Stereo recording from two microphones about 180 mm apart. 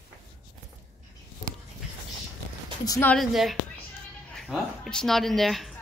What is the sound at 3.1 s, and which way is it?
A woman's voice, centre (ahead or behind).